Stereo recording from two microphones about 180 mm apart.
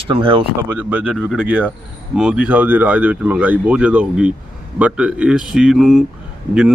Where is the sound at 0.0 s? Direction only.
30° right (ahead or behind).